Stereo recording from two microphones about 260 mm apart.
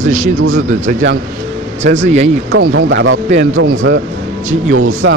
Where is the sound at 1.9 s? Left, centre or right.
Right.